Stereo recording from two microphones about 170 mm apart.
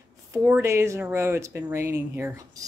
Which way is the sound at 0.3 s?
15° right (ahead or behind).